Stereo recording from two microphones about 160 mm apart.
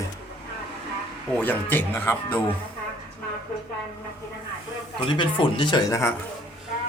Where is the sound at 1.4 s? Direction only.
10° left (ahead or behind).